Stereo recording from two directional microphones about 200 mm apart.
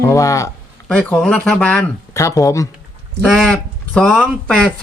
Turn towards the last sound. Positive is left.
turn(degrees=5)  # may be behind; listen again after turning